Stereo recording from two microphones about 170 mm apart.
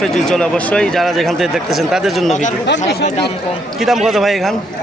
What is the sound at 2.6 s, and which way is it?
Speech, 90° left.